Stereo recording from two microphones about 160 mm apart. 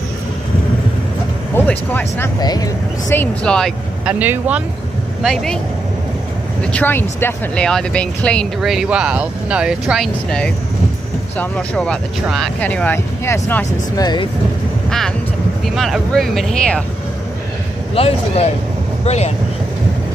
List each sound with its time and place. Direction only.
1.5 s speech: 10° left (ahead or behind)
2.4 s speech: 25° left (ahead or behind)
3.1 s speech: 10° left (ahead or behind)
4.0 s speech: 10° right (ahead or behind)
5.2 s speech: centre (ahead or behind)
6.6 s speech: 10° left (ahead or behind)
13.9 s speech: 25° left (ahead or behind)
14.9 s speech: 5° left (ahead or behind)
17.9 s speech: 40° left (ahead or behind)